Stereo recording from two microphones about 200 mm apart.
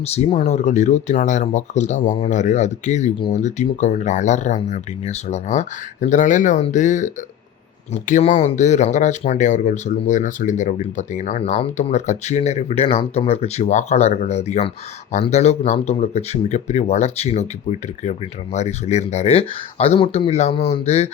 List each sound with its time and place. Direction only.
0.0 s speech: 30° left (ahead or behind)